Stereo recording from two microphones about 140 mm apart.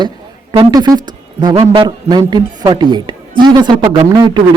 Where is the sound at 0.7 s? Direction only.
30° right (ahead or behind).